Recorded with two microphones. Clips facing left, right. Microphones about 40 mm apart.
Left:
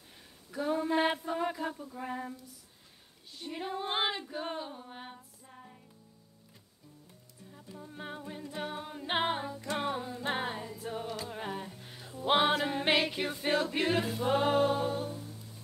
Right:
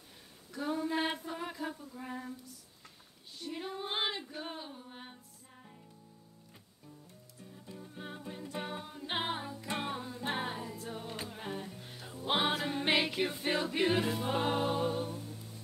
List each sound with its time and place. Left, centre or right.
0.5 s a sound: centre
3.3 s female singing: centre
4.3 s music: centre
7.7 s music: centre
8.8 s music: left
10.2 s singing: centre
10.8 s music: centre
11.7 s music: centre
12.9 s a capella: centre
13.5 s music: centre